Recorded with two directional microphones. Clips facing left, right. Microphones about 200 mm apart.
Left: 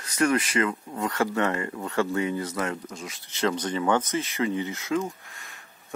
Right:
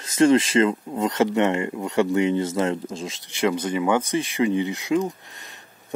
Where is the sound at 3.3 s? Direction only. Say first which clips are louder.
Right 4 dB; 10° right (ahead or behind).